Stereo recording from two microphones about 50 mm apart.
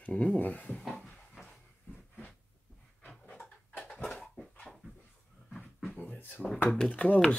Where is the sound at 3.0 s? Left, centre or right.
Left.